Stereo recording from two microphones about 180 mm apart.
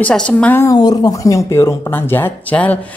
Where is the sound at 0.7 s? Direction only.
20° left (ahead or behind).